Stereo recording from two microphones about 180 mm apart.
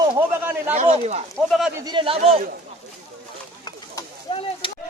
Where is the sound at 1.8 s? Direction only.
30° right (ahead or behind).